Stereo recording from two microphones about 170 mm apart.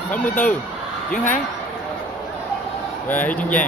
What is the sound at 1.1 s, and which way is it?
Speech, 50° left (ahead or behind).